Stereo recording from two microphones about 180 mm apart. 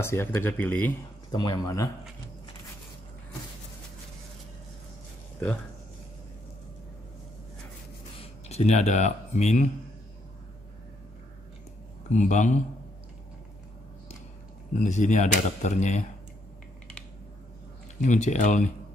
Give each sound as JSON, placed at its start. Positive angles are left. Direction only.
{"t": 0.0, "sound": "speech", "side_deg": 15}
{"t": 1.3, "sound": "speech", "side_deg": 25}
{"t": 8.5, "sound": "speech", "side_deg": 40}
{"t": 12.1, "sound": "speech", "side_deg": 45}
{"t": 14.8, "sound": "speech", "side_deg": 40}
{"t": 18.0, "sound": "speech", "side_deg": 40}